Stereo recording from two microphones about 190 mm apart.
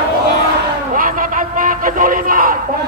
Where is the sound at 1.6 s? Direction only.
45° right (ahead or behind).